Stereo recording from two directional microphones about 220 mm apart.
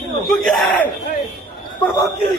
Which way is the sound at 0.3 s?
Centre (ahead or behind).